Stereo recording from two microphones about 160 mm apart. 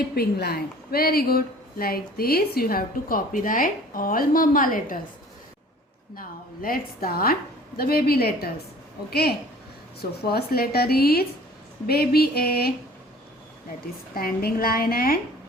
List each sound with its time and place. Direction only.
0.1 s a woman's voice: 75° left (ahead or behind); by 4.9 s 60° left (ahead or behind)
6.1 s a woman's voice: 65° left (ahead or behind)
14.2 s speech: 65° left (ahead or behind)